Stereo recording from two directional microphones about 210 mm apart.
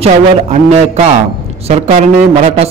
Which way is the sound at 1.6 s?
30° right (ahead or behind).